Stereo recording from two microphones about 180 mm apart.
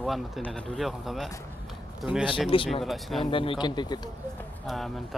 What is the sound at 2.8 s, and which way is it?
Speech, centre (ahead or behind).